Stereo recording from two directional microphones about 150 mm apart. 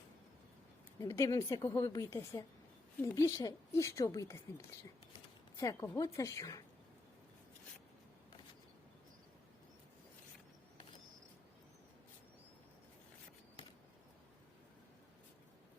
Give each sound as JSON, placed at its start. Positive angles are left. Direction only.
{"t": 0.9, "sound": "a woman's voice", "side_deg": 20}
{"t": 5.5, "sound": "a woman's voice", "side_deg": 20}